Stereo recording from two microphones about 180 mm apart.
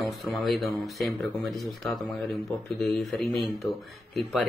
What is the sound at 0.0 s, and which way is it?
Speech, centre (ahead or behind).